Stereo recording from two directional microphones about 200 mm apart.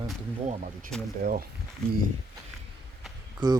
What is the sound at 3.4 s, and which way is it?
Speech, 20° right (ahead or behind).